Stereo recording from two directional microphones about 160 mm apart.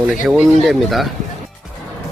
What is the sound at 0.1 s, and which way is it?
Speech, centre (ahead or behind).